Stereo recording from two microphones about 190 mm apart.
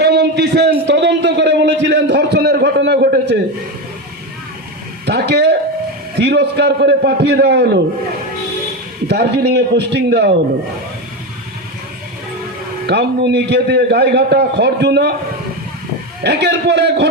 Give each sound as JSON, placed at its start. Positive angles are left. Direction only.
{"t": 0.0, "sound": "a sound", "side_deg": -60}
{"t": 5.0, "sound": "a man's voice", "side_deg": -60}
{"t": 9.0, "sound": "a man's voice", "side_deg": -60}
{"t": 12.9, "sound": "a man's voice", "side_deg": -60}
{"t": 16.2, "sound": "a man's voice", "side_deg": -60}